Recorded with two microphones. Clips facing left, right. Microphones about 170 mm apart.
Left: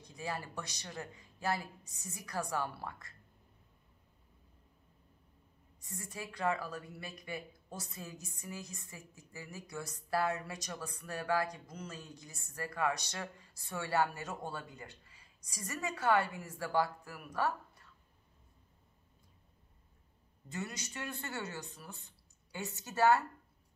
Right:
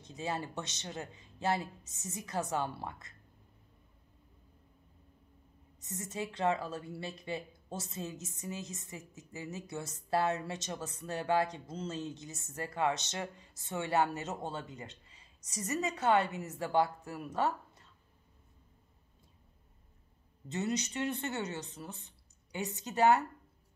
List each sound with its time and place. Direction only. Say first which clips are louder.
0.0 s a woman's voice: right 4 dB; 20° right (ahead or behind)
5.8 s a woman's voice: right 6 dB; 20° right (ahead or behind)
20.4 s a woman's voice: right 8 dB; 20° right (ahead or behind)